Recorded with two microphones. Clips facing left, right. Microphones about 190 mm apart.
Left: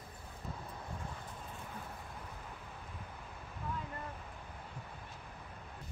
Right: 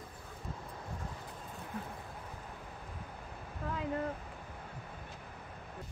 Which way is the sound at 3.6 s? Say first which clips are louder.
Right 2 dB; 85° right.